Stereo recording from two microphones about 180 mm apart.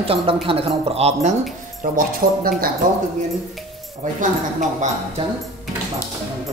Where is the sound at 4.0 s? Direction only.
45° right (ahead or behind).